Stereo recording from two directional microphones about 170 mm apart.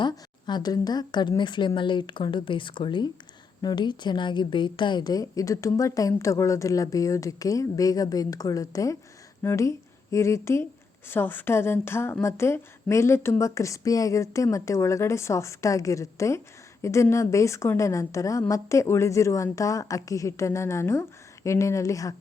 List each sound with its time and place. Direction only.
0.0 s a woman's voice: 25° left (ahead or behind)